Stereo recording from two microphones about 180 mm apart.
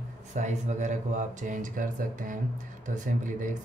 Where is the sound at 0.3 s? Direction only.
40° right (ahead or behind).